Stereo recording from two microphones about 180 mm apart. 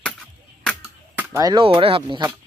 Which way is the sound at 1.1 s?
15° right (ahead or behind).